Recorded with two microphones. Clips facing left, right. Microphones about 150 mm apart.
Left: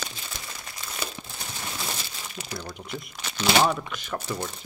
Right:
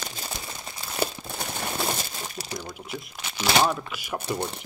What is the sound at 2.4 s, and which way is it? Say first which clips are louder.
Crumpling: left 2 dB; 40° right (ahead or behind).